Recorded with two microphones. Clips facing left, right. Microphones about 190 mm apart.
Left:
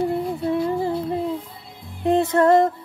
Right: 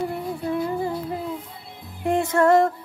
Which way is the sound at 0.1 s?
25° left (ahead or behind).